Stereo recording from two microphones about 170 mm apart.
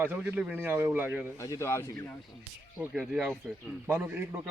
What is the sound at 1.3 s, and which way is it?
Speech, 20° left (ahead or behind).